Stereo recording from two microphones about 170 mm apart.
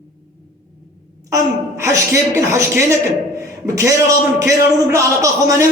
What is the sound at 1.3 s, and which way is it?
A woman's voice, 15° right (ahead or behind).